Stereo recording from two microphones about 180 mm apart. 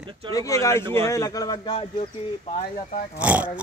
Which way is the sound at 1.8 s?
35° left (ahead or behind).